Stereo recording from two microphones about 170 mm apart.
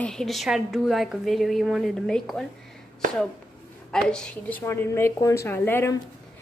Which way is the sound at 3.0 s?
50° right (ahead or behind).